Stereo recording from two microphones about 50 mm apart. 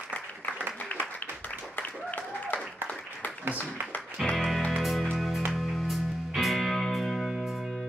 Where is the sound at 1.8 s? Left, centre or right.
Left.